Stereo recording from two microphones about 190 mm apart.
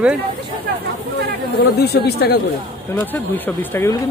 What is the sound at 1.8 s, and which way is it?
Speech, 55° left (ahead or behind).